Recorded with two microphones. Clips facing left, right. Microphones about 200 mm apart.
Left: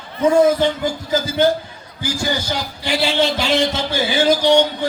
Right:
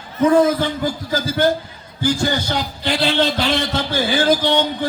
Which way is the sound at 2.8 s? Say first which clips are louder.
Even; 10° left (ahead or behind).